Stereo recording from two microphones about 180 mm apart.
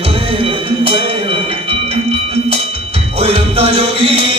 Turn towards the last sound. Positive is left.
turn(degrees=-35)  # may be behind; listen again after turning